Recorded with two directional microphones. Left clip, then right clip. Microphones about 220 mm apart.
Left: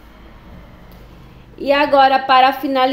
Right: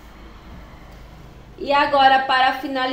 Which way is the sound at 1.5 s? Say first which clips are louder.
Left 4 dB; 50° left (ahead or behind).